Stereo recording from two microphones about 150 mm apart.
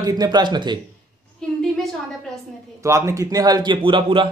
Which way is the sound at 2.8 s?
20° right (ahead or behind).